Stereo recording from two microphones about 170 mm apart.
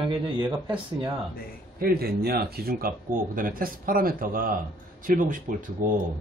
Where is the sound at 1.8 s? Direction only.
65° right (ahead or behind).